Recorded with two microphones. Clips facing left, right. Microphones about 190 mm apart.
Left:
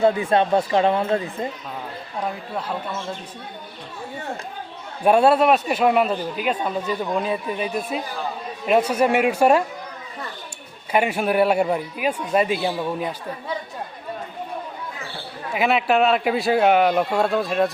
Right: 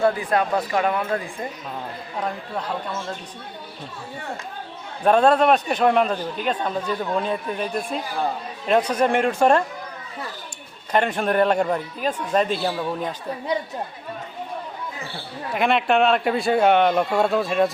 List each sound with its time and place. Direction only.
0.0 s speech: 25° left (ahead or behind)
2.2 s speech: 5° left (ahead or behind)
5.0 s a man's voice: 10° left (ahead or behind)
10.9 s a man's voice: 10° left (ahead or behind)
15.5 s speech: 5° left (ahead or behind)